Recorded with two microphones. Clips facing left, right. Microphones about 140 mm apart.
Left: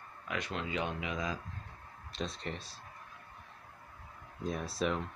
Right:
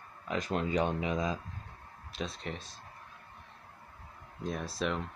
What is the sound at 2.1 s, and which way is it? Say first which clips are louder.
Speech: right 1 dB; centre (ahead or behind).